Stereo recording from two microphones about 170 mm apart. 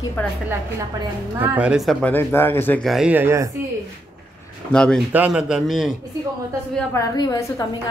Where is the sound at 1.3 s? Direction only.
10° right (ahead or behind); by 2.8 s 10° left (ahead or behind).